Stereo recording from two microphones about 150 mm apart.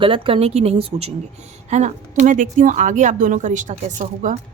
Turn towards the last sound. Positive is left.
turn(degrees=-55)  # may be behind; listen again after turning